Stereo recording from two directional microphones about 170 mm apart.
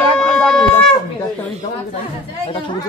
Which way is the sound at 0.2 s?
5° left (ahead or behind).